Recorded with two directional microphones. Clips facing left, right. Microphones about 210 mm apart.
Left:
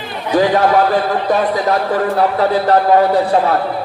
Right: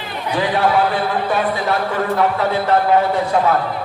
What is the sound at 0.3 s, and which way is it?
A man's voice, 40° left (ahead or behind).